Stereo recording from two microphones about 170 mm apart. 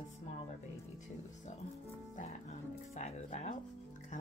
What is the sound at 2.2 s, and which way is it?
Speech, 40° left (ahead or behind).